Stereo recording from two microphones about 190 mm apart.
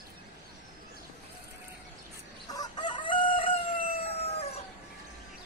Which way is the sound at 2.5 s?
20° left (ahead or behind).